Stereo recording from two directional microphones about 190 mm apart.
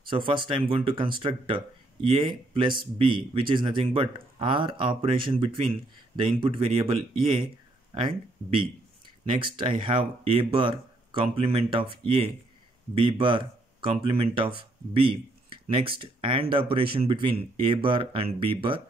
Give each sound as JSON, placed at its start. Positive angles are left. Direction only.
{"t": 0.1, "sound": "speech", "side_deg": -25}
{"t": 9.4, "sound": "speech", "side_deg": -25}